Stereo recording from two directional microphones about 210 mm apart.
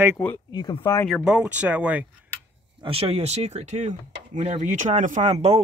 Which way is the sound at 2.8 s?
25° right (ahead or behind).